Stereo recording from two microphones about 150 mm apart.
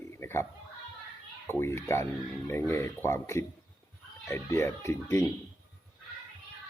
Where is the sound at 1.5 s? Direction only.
15° left (ahead or behind).